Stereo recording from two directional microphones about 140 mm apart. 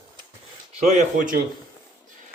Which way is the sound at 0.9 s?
65° right (ahead or behind).